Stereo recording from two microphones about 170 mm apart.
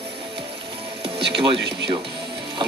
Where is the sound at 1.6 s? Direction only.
80° right.